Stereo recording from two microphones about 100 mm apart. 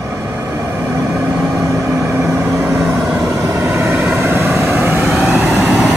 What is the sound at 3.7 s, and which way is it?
Vehicle, 20° right (ahead or behind).